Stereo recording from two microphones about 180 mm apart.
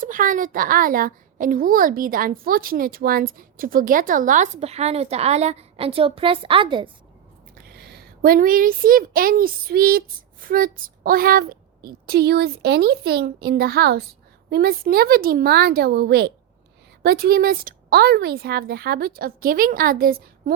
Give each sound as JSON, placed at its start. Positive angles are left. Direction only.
{"t": 0.0, "sound": "a woman's voice", "side_deg": -50}
{"t": 7.5, "sound": "a woman's voice", "side_deg": -65}